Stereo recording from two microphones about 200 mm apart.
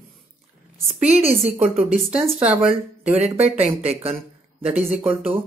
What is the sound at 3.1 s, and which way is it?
A woman's voice, 30° right (ahead or behind).